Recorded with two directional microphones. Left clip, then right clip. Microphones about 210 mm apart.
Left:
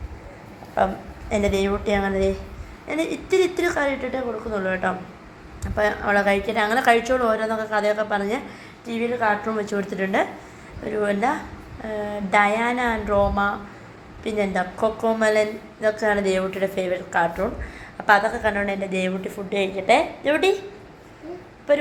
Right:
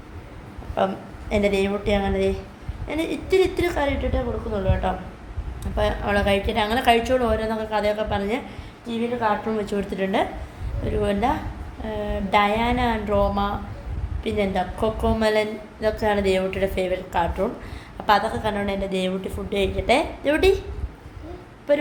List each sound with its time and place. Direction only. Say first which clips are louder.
0.8 s a woman's voice: left 1 dB; 5° right (ahead or behind)
9.2 s a woman's voice: left 1 dB; centre (ahead or behind)